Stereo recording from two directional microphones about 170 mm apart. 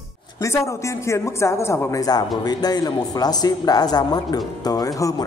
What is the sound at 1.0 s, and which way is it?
A woman's voice, 15° left (ahead or behind).